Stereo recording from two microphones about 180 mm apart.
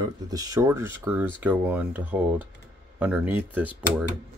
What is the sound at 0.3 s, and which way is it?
Speech, 20° right (ahead or behind).